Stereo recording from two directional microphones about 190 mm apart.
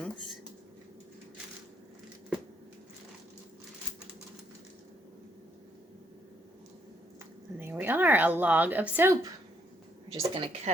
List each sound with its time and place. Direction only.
7.6 s speech: 10° right (ahead or behind)
10.1 s speech: 25° right (ahead or behind)